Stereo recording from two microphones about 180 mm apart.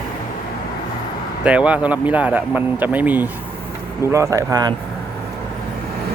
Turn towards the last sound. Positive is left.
turn(degrees=-20)  # may be behind; listen again after turning